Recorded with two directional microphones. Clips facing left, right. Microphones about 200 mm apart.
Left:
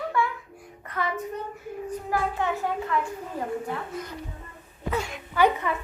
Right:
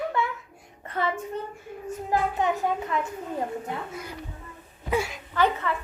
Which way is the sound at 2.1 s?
20° right (ahead or behind).